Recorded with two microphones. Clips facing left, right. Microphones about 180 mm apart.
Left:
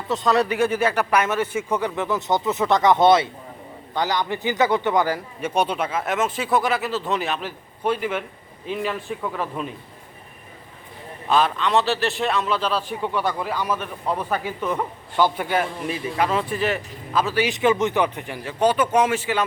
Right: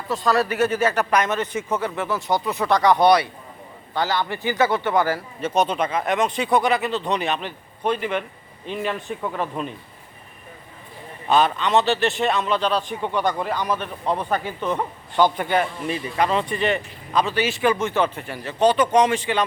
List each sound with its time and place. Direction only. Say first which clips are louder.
0.2 s a man's voice: even; 20° left (ahead or behind); by 9.7 s centre (ahead or behind)
11.3 s a man's voice: right 1 dB; centre (ahead or behind)